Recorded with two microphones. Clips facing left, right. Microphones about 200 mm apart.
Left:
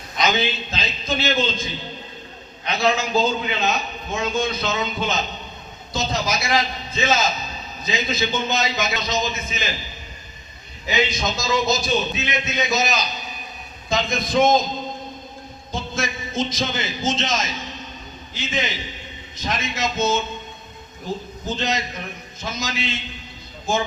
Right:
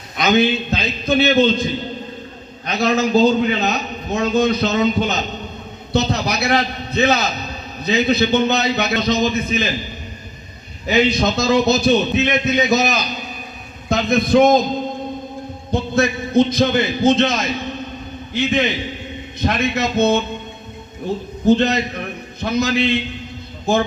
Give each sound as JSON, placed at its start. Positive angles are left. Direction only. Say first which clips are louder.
{"t": 0.2, "sound": "a man's voice", "louder": "right 7 dB", "side_deg": -60}
{"t": 2.6, "sound": "a man's voice", "louder": "right 4 dB", "side_deg": -45}
{"t": 5.9, "sound": "a man's voice", "louder": "right 5 dB", "side_deg": -65}
{"t": 10.8, "sound": "a man's voice", "louder": "right 7 dB", "side_deg": -60}
{"t": 15.7, "sound": "a man's voice", "louder": "right 9 dB", "side_deg": -60}
{"t": 21.4, "sound": "a man's voice", "louder": "right 12 dB", "side_deg": -60}